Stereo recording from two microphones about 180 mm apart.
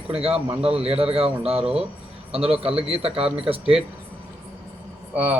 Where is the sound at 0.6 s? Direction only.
30° right (ahead or behind).